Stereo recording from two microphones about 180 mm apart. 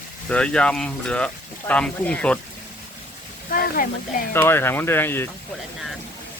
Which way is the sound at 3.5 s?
50° left (ahead or behind).